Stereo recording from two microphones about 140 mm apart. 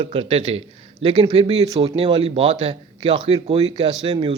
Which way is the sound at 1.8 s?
35° right (ahead or behind).